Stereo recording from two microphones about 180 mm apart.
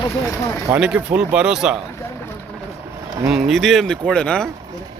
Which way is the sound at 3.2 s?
Centre (ahead or behind).